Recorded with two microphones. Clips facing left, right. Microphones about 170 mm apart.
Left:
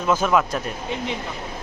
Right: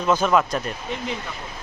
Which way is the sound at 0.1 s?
5° left (ahead or behind).